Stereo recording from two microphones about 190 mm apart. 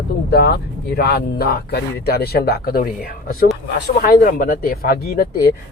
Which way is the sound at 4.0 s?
45° left (ahead or behind).